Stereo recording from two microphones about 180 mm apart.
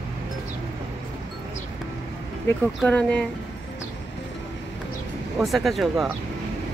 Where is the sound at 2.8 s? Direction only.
5° left (ahead or behind).